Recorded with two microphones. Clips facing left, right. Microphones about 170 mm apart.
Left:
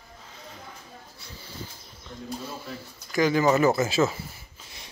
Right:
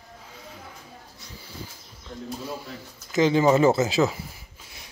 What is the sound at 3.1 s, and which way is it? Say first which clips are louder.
Speech: right 2 dB; 25° right (ahead or behind).